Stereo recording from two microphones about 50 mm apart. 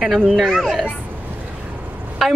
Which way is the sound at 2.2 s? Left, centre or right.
Centre.